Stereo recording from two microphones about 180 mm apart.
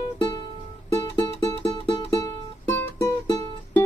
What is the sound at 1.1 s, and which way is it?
Music, 20° left (ahead or behind).